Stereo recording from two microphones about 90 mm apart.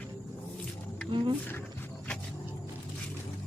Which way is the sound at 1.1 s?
70° right (ahead or behind).